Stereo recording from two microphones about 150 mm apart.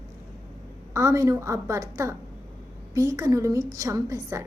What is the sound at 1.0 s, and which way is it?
A child's voice, 20° right (ahead or behind).